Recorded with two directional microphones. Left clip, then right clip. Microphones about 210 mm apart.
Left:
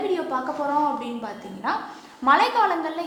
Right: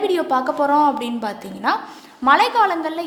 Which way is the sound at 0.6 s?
50° right (ahead or behind).